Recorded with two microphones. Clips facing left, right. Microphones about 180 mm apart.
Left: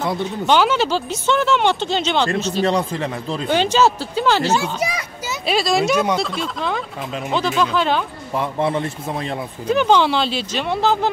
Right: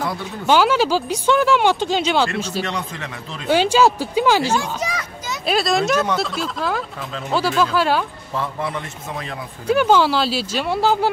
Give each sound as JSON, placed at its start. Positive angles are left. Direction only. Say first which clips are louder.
{"t": 0.5, "sound": "speech", "louder": "right 1 dB", "side_deg": -5}
{"t": 2.6, "sound": "a man's voice", "louder": "left 8 dB", "side_deg": 30}
{"t": 3.4, "sound": "speech", "louder": "right 1 dB", "side_deg": -10}
{"t": 4.6, "sound": "speech", "louder": "left 2 dB", "side_deg": 10}
{"t": 8.5, "sound": "a man's voice", "louder": "left 6 dB", "side_deg": 25}
{"t": 9.7, "sound": "speech", "louder": "even", "side_deg": -5}